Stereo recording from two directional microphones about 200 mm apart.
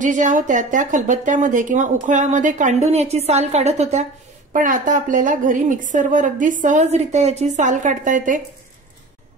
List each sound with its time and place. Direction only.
0.0 s speech: 40° right (ahead or behind)